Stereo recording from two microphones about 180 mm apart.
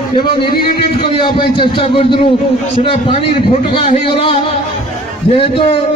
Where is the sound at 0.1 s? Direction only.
25° left (ahead or behind).